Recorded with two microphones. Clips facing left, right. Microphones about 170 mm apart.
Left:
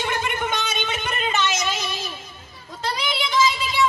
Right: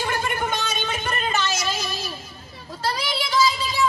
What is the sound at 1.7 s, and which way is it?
Child singing, 40° right (ahead or behind).